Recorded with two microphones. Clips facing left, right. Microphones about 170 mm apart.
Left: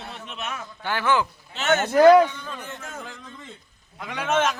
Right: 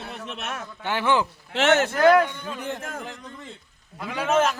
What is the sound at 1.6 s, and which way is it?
Speech, 90° right.